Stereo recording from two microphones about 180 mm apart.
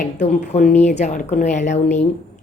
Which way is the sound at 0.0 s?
40° left (ahead or behind).